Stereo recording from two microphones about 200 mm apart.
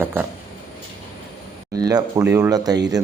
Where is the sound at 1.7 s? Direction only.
20° right (ahead or behind).